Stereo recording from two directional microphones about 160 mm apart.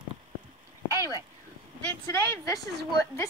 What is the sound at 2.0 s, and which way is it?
Speech, 20° left (ahead or behind).